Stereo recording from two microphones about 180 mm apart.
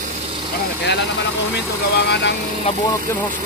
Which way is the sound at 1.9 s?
70° left (ahead or behind).